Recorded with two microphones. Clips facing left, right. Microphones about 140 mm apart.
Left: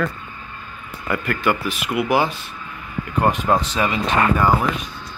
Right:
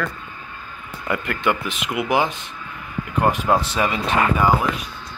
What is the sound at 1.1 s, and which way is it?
Speech, 20° right (ahead or behind).